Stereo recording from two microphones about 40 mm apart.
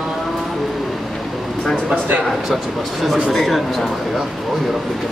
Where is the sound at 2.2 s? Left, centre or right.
Centre.